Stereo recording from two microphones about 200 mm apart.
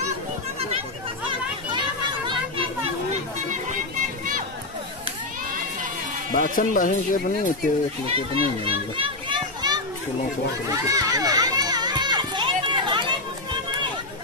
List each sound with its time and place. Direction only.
6.3 s speech: 40° left (ahead or behind)
8.1 s a child's voice: 25° right (ahead or behind)
10.7 s children playing: 15° right (ahead or behind)